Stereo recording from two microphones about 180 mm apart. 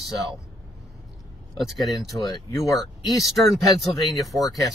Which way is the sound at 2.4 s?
20° left (ahead or behind).